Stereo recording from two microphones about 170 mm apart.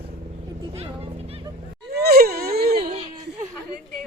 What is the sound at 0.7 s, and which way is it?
Speech, 35° right (ahead or behind).